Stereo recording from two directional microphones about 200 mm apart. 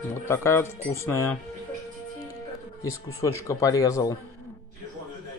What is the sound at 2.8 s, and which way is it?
Speech, 15° left (ahead or behind).